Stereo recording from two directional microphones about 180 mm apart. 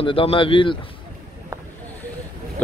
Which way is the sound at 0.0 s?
30° left (ahead or behind).